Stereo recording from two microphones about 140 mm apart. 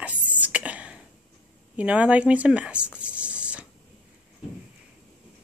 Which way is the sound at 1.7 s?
10° right (ahead or behind).